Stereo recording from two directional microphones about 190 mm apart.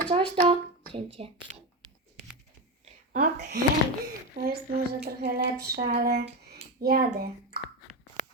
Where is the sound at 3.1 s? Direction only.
45° right (ahead or behind).